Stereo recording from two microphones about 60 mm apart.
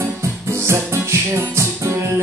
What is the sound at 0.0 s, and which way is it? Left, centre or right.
Music, right.